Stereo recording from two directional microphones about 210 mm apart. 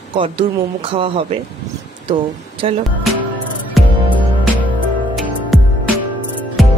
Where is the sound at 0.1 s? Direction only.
25° right (ahead or behind).